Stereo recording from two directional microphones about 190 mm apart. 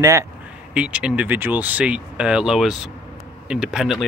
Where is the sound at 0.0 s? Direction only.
15° right (ahead or behind).